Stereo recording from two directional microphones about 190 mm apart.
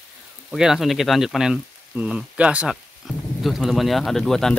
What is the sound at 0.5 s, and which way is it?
Speech, centre (ahead or behind).